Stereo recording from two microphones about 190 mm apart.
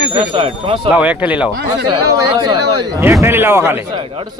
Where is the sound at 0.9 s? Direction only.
5° right (ahead or behind).